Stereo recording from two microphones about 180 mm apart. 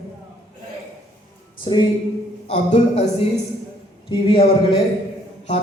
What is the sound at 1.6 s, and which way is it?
A man's voice, 25° left (ahead or behind).